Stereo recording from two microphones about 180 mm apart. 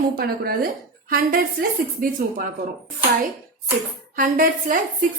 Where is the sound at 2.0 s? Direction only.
50° right (ahead or behind).